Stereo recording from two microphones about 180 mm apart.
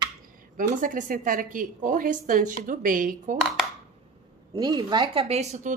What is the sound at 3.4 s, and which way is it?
Speech, centre (ahead or behind).